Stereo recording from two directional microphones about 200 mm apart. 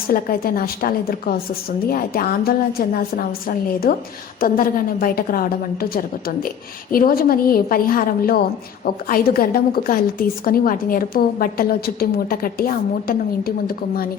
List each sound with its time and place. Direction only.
0.1 s a woman's voice: 45° left (ahead or behind)